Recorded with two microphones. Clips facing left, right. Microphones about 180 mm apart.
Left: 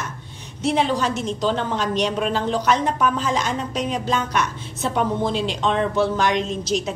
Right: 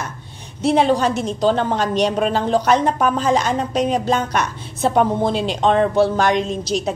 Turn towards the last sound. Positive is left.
turn(degrees=-40)  # may be behind; listen again after turning